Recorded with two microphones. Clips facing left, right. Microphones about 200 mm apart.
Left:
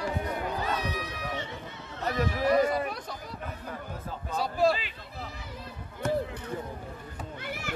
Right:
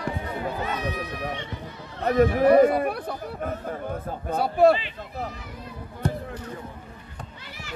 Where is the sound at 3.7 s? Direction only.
50° right (ahead or behind).